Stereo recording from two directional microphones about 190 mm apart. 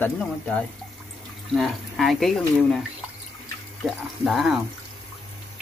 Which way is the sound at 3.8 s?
Centre (ahead or behind).